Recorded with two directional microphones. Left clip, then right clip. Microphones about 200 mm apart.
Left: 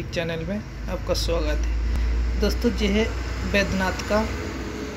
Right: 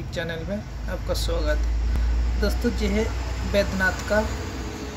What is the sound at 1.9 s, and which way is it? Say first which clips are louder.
Vehicle: even; centre (ahead or behind).